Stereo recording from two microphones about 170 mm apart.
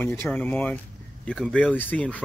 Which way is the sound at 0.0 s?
10° left (ahead or behind).